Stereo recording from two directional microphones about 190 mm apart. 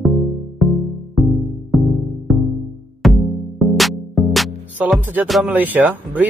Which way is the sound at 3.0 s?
Centre (ahead or behind).